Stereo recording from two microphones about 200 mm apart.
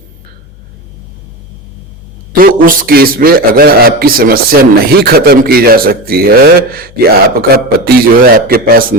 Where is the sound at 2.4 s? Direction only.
45° right (ahead or behind).